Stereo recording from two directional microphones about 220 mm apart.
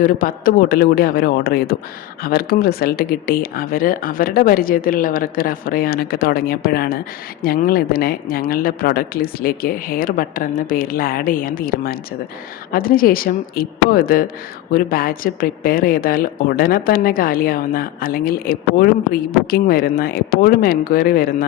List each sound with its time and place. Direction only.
0.0 s a man's voice: 40° left (ahead or behind)